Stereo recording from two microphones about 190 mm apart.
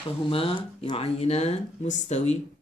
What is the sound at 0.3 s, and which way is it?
Speech, 30° left (ahead or behind).